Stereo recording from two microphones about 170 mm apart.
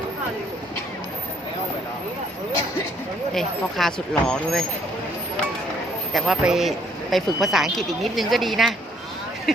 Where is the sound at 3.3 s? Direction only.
Centre (ahead or behind).